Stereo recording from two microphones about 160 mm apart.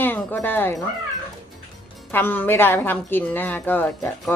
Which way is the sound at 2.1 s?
10° left (ahead or behind).